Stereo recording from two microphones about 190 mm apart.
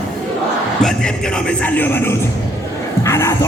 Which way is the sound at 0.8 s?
5° left (ahead or behind).